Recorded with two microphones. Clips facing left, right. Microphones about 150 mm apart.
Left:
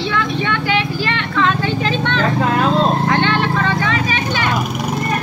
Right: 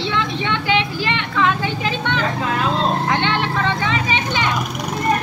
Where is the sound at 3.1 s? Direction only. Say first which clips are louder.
Left 3 dB; 15° right (ahead or behind).